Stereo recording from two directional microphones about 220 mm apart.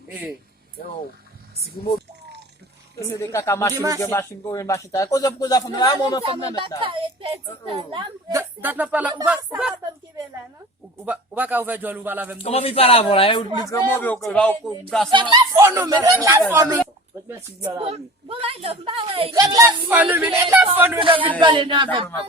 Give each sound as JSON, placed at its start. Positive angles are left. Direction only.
{"t": 3.1, "sound": "a man's voice", "side_deg": 15}
{"t": 3.8, "sound": "speech", "side_deg": -15}
{"t": 4.0, "sound": "a man's voice", "side_deg": 10}
{"t": 6.8, "sound": "a woman's voice", "side_deg": -25}
{"t": 11.0, "sound": "speech", "side_deg": -5}
{"t": 12.4, "sound": "speech", "side_deg": 25}
{"t": 13.7, "sound": "a man's voice", "side_deg": 10}
{"t": 15.1, "sound": "speech", "side_deg": -20}
{"t": 17.7, "sound": "a woman's voice", "side_deg": -25}
{"t": 21.0, "sound": "a woman's voice", "side_deg": -25}